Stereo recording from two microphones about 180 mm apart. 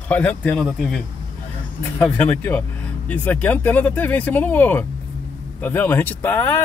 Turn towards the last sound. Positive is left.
turn(degrees=10)  # may be behind; listen again after turning